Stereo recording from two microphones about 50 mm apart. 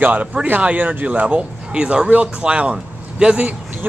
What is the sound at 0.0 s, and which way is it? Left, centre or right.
Speech, right.